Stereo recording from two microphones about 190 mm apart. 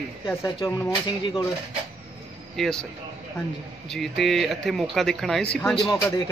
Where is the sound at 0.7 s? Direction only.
15° left (ahead or behind).